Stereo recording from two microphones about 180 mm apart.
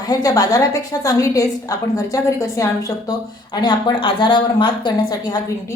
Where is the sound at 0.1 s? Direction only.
20° left (ahead or behind).